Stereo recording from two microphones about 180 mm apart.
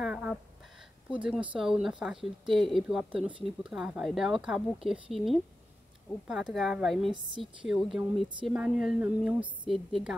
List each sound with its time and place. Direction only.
0.0 s a sound: 5° right (ahead or behind)
1.1 s speech: 5° right (ahead or behind)
7.1 s a woman's voice: 25° right (ahead or behind)
7.6 s speech: centre (ahead or behind)